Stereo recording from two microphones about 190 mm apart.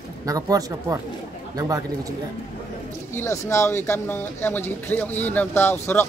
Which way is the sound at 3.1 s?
15° left (ahead or behind).